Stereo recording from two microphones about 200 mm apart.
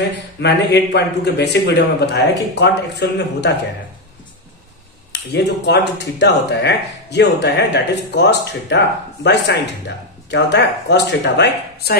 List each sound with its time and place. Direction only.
0.4 s speech: 55° left (ahead or behind)
5.1 s speech: 55° left (ahead or behind)